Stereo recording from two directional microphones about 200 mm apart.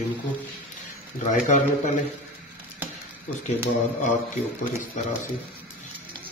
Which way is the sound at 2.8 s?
10° right (ahead or behind).